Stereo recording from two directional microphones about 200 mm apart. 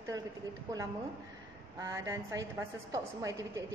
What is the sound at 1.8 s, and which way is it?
A woman's voice, 15° right (ahead or behind).